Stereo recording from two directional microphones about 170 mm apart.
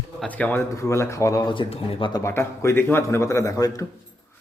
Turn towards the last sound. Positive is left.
turn(degrees=20)  # may be behind; listen again after turning